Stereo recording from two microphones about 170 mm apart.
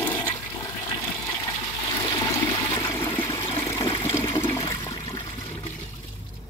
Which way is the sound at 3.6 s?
20° left (ahead or behind).